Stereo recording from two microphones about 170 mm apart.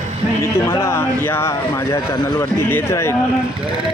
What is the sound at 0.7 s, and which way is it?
Speech, 15° left (ahead or behind).